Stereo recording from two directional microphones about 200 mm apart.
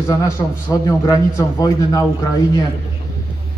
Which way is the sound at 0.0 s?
15° left (ahead or behind).